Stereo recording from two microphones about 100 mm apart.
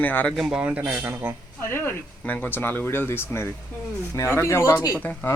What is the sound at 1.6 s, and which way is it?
A woman's voice, 25° left (ahead or behind).